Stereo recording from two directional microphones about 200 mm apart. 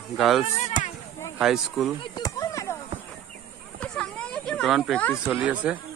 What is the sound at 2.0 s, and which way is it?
Chop, 20° left (ahead or behind).